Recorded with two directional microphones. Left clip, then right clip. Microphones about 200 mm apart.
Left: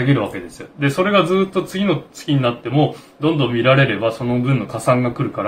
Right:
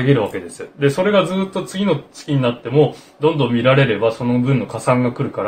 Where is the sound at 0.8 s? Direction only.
15° right (ahead or behind).